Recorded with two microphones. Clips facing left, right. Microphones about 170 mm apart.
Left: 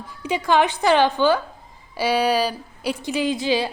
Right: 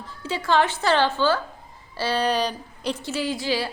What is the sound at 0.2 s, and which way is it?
A woman's voice, 15° left (ahead or behind).